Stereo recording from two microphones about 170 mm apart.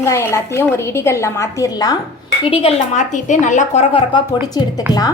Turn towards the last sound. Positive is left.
turn(degrees=25)  # may be behind; listen again after turning